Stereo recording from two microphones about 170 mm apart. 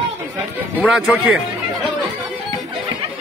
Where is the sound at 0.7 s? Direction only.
5° right (ahead or behind).